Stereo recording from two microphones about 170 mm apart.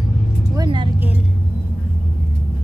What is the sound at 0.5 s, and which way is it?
Vehicle, 25° right (ahead or behind).